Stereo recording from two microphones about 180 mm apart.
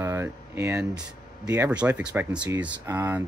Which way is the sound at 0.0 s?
15° right (ahead or behind).